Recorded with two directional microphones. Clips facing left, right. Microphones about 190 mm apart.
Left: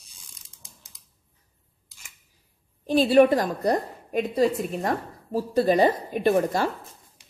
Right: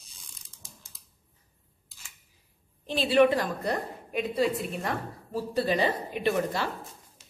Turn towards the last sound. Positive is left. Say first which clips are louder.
# left 6 dB
turn(degrees=45)  # may be behind; listen again after turning